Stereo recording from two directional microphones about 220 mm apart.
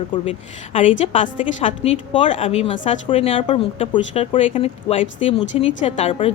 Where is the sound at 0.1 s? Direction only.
25° left (ahead or behind).